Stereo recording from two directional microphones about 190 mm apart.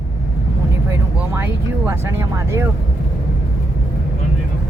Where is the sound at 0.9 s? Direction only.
10° right (ahead or behind).